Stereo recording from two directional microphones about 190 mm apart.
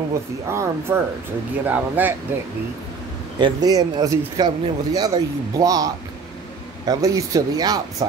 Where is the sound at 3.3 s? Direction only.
20° right (ahead or behind).